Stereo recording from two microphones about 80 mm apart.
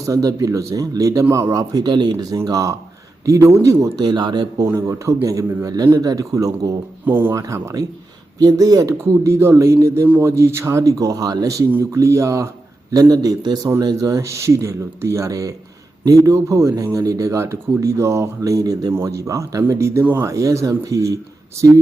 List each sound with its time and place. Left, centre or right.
0.0 s speech: right
1.7 s speech: right
2.3 s speech: right
4.0 s speech: right
4.5 s speech: right
7.0 s speech: right
7.3 s speech: right